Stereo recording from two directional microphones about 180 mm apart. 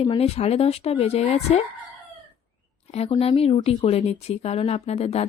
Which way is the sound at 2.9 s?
35° left (ahead or behind).